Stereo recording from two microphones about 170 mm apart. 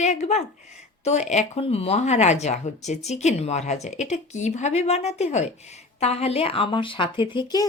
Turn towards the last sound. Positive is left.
turn(degrees=25)  # may be behind; listen again after turning